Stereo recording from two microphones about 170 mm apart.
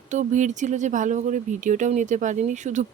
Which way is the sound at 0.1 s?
45° right (ahead or behind).